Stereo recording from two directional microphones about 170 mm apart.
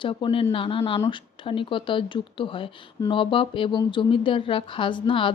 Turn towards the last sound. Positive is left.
turn(degrees=30)  # may be behind; listen again after turning